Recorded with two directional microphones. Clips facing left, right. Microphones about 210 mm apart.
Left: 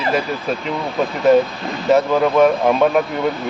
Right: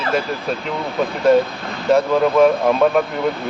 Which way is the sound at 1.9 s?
Centre (ahead or behind).